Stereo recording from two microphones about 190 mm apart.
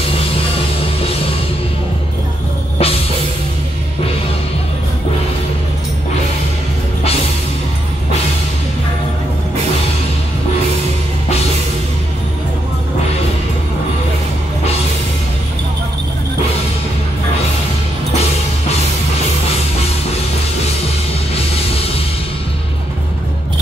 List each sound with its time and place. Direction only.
2.8 s music: 30° left (ahead or behind)